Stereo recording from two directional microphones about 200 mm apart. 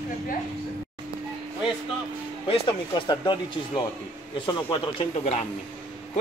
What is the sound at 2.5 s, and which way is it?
Speech, 25° left (ahead or behind).